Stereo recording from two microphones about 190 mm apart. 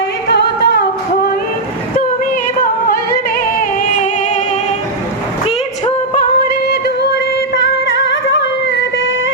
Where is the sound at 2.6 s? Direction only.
50° left (ahead or behind).